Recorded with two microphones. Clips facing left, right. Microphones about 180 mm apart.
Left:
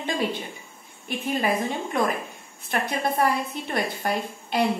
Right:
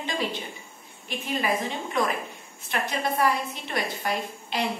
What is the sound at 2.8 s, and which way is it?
Speech, 55° left (ahead or behind).